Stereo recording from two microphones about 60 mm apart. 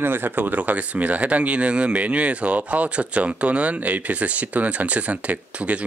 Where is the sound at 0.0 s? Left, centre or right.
Right.